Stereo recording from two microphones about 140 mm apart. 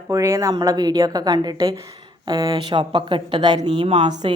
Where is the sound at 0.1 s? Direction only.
20° right (ahead or behind).